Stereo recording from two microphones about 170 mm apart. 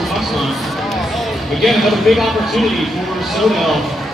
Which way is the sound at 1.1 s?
Centre (ahead or behind).